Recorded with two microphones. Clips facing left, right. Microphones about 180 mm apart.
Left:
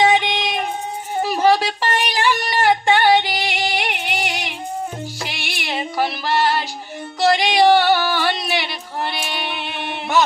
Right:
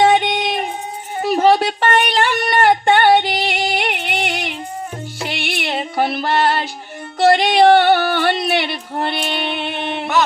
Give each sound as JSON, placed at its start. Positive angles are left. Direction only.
{"t": 0.0, "sound": "music", "side_deg": -50}
{"t": 1.3, "sound": "female singing", "side_deg": -55}
{"t": 5.2, "sound": "music", "side_deg": -55}